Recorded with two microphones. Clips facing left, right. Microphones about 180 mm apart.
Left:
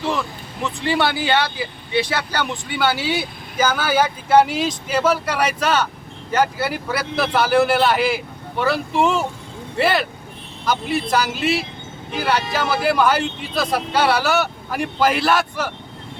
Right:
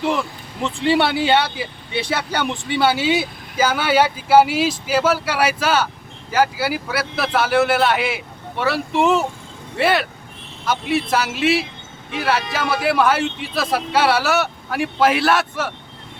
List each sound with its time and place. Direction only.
0.6 s speech: 25° right (ahead or behind)
3.6 s speech: 5° right (ahead or behind)